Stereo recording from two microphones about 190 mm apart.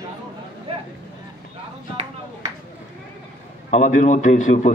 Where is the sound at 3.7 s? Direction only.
40° left (ahead or behind).